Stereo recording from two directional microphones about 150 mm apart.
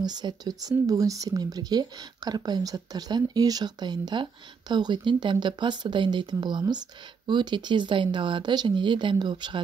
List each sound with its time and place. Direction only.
0.0 s speech: 25° right (ahead or behind)